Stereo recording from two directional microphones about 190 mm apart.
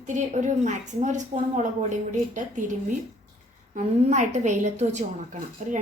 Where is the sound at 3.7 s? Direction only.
40° right (ahead or behind).